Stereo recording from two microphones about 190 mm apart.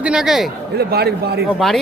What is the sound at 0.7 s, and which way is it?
Speech, 55° right (ahead or behind).